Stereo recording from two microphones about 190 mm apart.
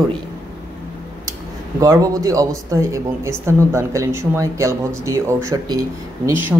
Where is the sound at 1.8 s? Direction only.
20° right (ahead or behind).